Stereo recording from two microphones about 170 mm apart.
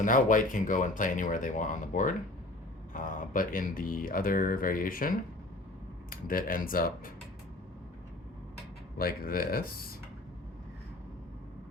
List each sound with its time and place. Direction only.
0.0 s speech: 50° left (ahead or behind)
9.0 s speech: 60° left (ahead or behind)